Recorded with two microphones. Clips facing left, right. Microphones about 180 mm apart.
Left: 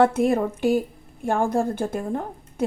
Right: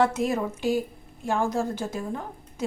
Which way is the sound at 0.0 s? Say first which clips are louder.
Left 5 dB; 55° left (ahead or behind).